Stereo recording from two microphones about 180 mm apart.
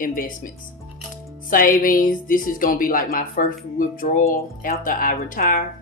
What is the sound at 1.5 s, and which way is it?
A woman's voice, 50° left (ahead or behind).